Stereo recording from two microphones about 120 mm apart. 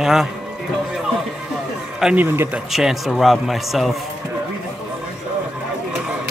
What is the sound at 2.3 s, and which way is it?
Speech, 15° right (ahead or behind).